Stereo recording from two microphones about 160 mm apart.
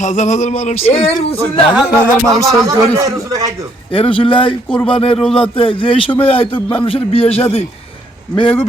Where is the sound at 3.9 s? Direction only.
35° left (ahead or behind).